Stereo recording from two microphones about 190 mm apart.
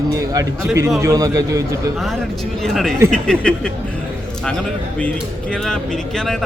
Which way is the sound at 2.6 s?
Centre (ahead or behind).